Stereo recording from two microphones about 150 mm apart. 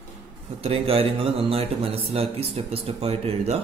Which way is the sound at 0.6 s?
40° right (ahead or behind).